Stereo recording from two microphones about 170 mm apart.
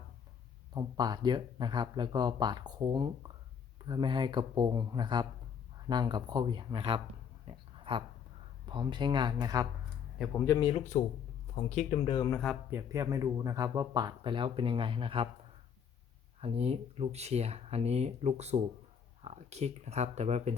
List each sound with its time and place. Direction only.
0.7 s speech: 25° right (ahead or behind)
7.4 s a sound: 30° right (ahead or behind)
8.6 s speech: 25° right (ahead or behind)
10.3 s speech: 15° left (ahead or behind)
10.9 s speech: 45° left (ahead or behind)
12.1 s speech: 20° left (ahead or behind)
12.7 s speech: 20° right (ahead or behind)
16.4 s speech: 35° right (ahead or behind)